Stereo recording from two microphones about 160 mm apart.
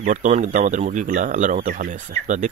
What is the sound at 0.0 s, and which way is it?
Speech, 50° right (ahead or behind).